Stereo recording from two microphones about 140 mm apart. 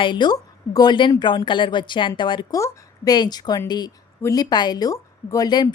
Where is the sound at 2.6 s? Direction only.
25° left (ahead or behind).